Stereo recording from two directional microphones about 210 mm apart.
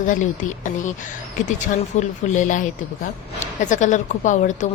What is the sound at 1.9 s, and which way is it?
Speech, 35° left (ahead or behind).